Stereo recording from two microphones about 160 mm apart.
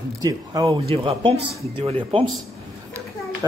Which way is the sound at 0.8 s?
35° right (ahead or behind).